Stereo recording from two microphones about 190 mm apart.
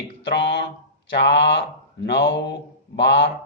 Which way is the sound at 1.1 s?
65° left (ahead or behind).